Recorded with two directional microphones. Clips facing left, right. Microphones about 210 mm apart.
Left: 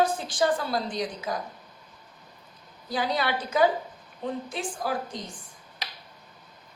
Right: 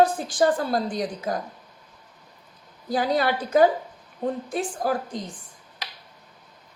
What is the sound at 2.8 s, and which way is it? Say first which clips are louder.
A woman's voice: right 5 dB; 45° right (ahead or behind).